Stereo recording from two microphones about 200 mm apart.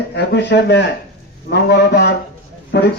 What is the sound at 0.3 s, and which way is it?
A man's voice, 60° left (ahead or behind).